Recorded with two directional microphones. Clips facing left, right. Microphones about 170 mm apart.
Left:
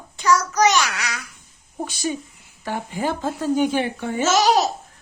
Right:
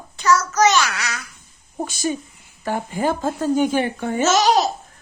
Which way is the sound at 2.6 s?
45° right (ahead or behind).